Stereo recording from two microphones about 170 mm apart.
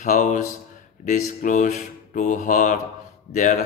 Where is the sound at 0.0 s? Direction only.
50° left (ahead or behind).